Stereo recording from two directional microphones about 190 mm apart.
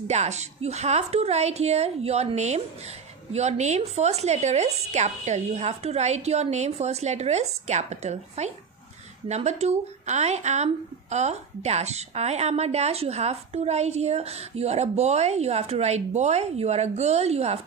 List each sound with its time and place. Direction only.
0.1 s a woman's voice: 35° right (ahead or behind)